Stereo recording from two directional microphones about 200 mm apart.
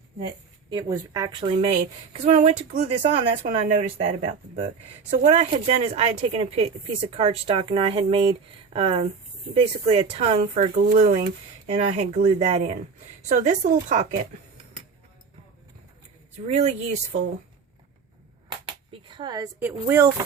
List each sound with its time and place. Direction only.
0.7 s a woman's voice: 20° right (ahead or behind)
5.1 s a woman's voice: 35° right (ahead or behind)
16.5 s a woman's voice: 35° right (ahead or behind)
18.4 s a sound: 25° right (ahead or behind)
19.5 s speech: 10° right (ahead or behind)